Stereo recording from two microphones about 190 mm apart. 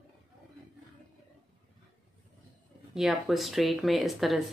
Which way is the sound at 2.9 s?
Centre (ahead or behind).